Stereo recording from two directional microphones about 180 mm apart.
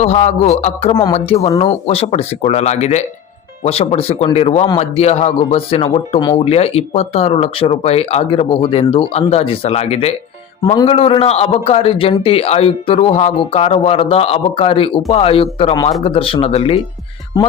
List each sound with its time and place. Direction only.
0.0 s speech: 40° left (ahead or behind)